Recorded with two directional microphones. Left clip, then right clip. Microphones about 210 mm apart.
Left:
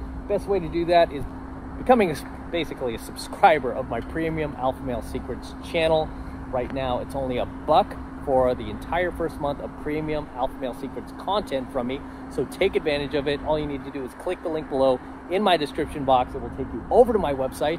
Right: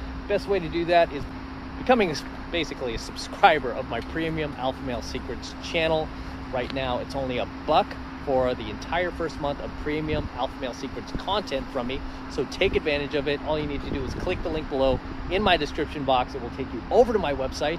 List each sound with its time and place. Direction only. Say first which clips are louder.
0.3 s speech: left 1 dB; 15° left (ahead or behind)